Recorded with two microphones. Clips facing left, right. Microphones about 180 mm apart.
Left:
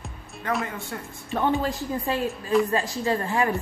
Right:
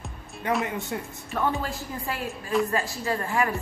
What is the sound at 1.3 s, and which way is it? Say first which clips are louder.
A woman's voice: left 4 dB; 20° left (ahead or behind).